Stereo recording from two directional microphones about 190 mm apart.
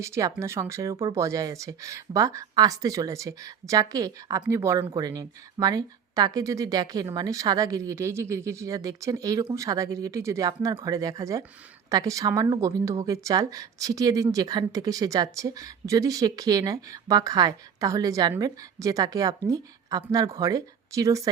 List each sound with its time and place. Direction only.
0.0 s speech: 15° right (ahead or behind)